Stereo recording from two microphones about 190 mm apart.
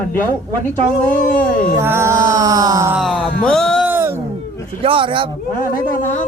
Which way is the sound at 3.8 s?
10° right (ahead or behind).